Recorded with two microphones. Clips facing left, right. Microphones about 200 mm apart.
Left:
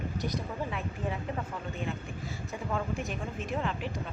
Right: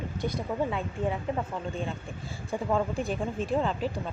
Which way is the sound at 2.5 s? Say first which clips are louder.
Right 6 dB; 30° right (ahead or behind).